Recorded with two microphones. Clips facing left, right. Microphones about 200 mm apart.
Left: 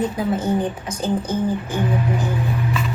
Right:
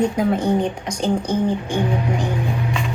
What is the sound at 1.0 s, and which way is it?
Speech, 5° left (ahead or behind).